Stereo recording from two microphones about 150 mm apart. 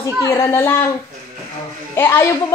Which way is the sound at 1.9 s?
15° left (ahead or behind).